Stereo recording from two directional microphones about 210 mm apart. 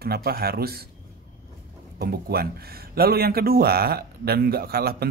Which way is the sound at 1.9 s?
45° right (ahead or behind).